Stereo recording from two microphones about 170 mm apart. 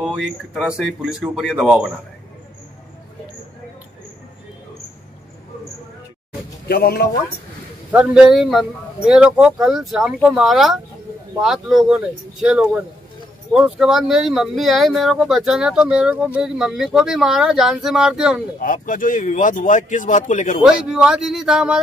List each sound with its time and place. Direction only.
0.0 s a man's voice: 5° right (ahead or behind)
6.7 s a man's voice: 70° left (ahead or behind)
7.9 s a man's voice: 5° right (ahead or behind)
18.6 s speech: 55° left (ahead or behind)
20.6 s a man's voice: 5° right (ahead or behind)